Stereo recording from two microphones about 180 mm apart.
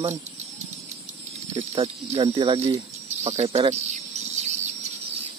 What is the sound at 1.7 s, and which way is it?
Speech, 30° right (ahead or behind).